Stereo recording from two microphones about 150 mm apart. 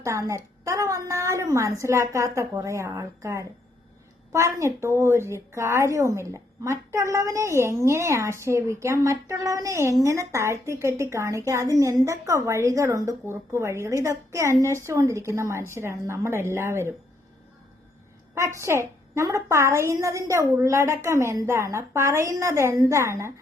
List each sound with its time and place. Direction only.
0.0 s a woman's voice: 20° right (ahead or behind)
18.3 s a woman's voice: 20° right (ahead or behind)